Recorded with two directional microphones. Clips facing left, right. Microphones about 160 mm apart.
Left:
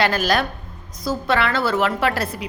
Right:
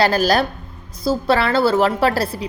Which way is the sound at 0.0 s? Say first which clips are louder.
Right 3 dB; 35° right (ahead or behind).